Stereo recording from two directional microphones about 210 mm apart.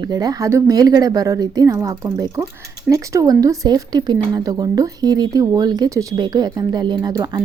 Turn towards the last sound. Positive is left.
turn(degrees=-20)  # may be behind; listen again after turning